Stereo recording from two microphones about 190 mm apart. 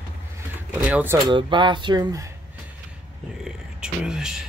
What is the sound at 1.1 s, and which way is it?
Speech, 25° right (ahead or behind).